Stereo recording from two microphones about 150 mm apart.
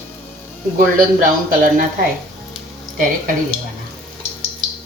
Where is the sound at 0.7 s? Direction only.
65° right (ahead or behind).